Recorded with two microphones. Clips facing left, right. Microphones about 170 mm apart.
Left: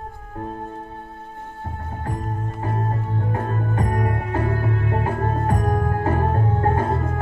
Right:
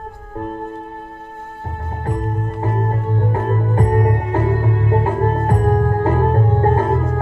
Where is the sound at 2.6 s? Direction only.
30° right (ahead or behind).